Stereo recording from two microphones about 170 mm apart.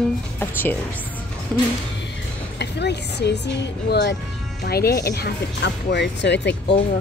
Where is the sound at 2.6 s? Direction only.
80° left.